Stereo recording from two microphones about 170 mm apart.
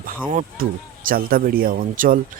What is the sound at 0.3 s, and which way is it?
A man's voice, 55° right (ahead or behind).